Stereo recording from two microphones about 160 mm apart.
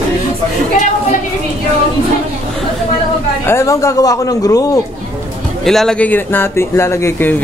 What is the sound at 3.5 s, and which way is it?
Speech, 20° left (ahead or behind).